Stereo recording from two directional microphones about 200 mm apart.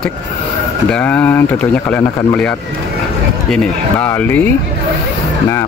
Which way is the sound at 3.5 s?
5° left (ahead or behind).